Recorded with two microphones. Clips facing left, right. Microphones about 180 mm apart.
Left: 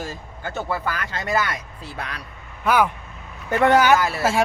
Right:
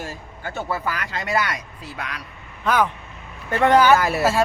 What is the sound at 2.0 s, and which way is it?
Speech, 35° left (ahead or behind).